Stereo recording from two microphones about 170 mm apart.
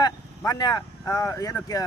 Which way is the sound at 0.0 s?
20° left (ahead or behind).